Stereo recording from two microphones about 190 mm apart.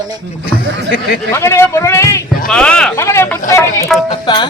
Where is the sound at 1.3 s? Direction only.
15° left (ahead or behind).